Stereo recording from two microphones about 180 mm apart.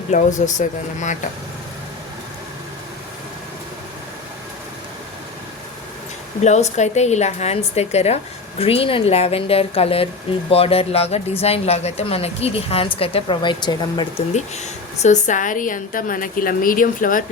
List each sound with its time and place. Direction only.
0.1 s a woman's voice: 40° left (ahead or behind)
6.4 s a woman's voice: 40° left (ahead or behind)
14.3 s a woman's voice: 40° left (ahead or behind)